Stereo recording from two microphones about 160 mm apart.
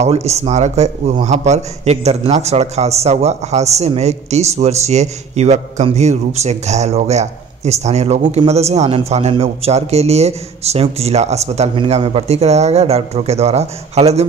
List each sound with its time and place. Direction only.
0.0 s a man's voice: 40° right (ahead or behind)